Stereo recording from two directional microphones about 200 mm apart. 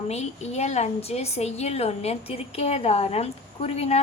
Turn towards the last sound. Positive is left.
turn(degrees=30)  # may be behind; listen again after turning